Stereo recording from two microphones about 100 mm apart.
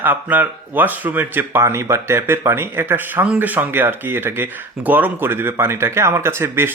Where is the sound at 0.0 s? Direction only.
15° right (ahead or behind).